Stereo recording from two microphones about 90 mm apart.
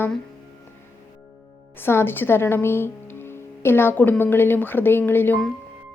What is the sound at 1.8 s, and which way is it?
Speech, 25° left (ahead or behind).